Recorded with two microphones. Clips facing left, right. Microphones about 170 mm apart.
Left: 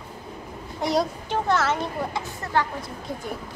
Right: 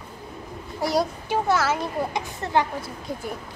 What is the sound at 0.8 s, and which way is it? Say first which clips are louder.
Speech: even; 5° right (ahead or behind).